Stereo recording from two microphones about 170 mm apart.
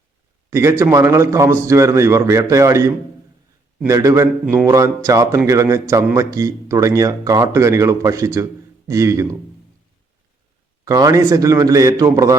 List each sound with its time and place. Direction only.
0.5 s a man's voice: 15° right (ahead or behind)
10.8 s speech: 20° right (ahead or behind)